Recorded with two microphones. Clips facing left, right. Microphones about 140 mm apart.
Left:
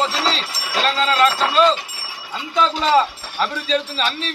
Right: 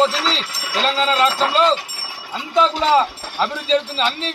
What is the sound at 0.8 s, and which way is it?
A man's voice, 20° right (ahead or behind).